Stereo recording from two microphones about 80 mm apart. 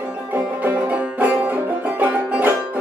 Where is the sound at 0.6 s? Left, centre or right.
Centre.